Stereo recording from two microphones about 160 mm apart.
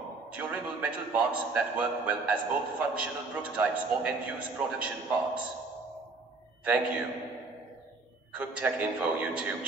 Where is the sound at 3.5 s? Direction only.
10° right (ahead or behind).